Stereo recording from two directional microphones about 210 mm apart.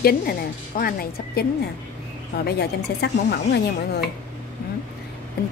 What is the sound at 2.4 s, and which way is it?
Speech, 50° left (ahead or behind).